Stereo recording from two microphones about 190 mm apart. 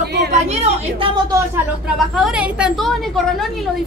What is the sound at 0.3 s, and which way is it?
A woman's voice, 35° right (ahead or behind).